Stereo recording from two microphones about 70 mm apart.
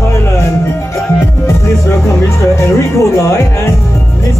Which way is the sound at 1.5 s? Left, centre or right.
Left.